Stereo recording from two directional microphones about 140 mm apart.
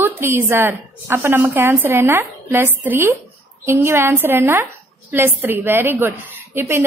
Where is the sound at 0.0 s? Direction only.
15° right (ahead or behind).